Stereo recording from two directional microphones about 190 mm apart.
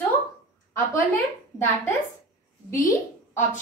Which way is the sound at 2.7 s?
15° left (ahead or behind).